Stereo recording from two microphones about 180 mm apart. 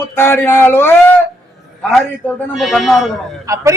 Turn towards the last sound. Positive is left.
turn(degrees=-15)  # may be behind; listen again after turning